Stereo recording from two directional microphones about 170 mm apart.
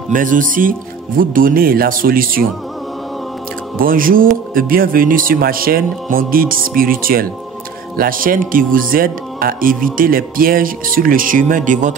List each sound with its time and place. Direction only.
0.1 s speech: 50° right (ahead or behind)
3.7 s speech: 55° right (ahead or behind)